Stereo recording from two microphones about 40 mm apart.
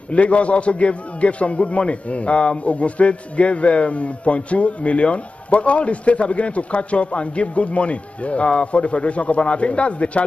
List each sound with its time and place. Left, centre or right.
0.1 s a man's voice: left